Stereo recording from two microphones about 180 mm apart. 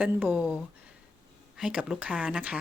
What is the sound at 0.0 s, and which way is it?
Speech, 10° right (ahead or behind).